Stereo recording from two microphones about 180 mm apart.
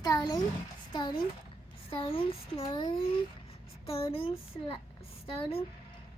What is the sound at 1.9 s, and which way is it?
A child's voice, 30° left (ahead or behind).